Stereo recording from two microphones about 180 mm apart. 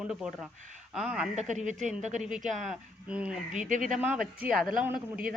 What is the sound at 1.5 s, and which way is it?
Speech, 45° right (ahead or behind).